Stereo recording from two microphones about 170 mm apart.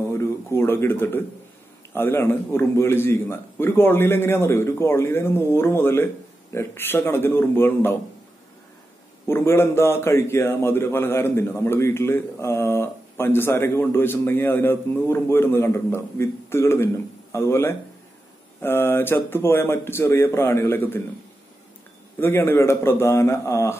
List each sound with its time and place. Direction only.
0.1 s a man's voice: 15° left (ahead or behind)
9.3 s a man's voice: 15° left (ahead or behind)
22.2 s a man's voice: 15° left (ahead or behind)